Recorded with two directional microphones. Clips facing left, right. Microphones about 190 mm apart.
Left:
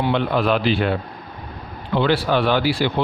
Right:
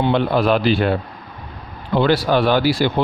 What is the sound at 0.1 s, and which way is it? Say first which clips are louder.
Speech: right 3 dB; 40° right (ahead or behind).